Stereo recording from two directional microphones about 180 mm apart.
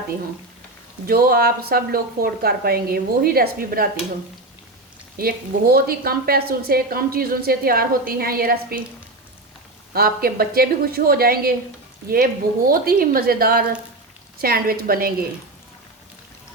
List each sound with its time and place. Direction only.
1.0 s a woman's voice: 55° right (ahead or behind)
5.1 s a woman's voice: 55° right (ahead or behind)
9.9 s a woman's voice: 55° right (ahead or behind)